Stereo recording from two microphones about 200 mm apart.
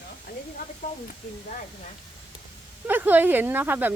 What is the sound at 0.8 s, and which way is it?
Speech, 35° left (ahead or behind).